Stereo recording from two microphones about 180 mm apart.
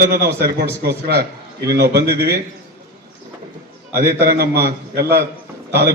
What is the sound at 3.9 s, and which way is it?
A man's voice, 65° right (ahead or behind).